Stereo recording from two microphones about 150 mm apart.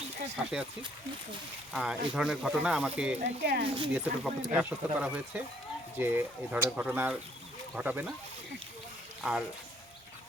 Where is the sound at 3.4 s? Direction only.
90° right.